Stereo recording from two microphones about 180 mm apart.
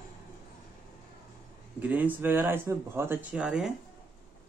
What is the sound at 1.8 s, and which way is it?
Speech, 10° right (ahead or behind).